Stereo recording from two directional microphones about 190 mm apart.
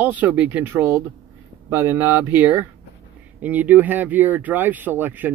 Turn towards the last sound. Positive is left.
turn(degrees=-10)  # may be behind; listen again after turning